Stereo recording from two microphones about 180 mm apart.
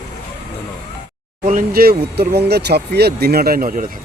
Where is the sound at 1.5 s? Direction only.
55° right (ahead or behind).